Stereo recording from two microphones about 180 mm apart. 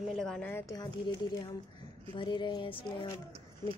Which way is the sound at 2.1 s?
25° left (ahead or behind).